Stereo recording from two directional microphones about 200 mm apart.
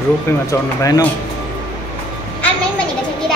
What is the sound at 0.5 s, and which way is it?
Speech, 15° left (ahead or behind).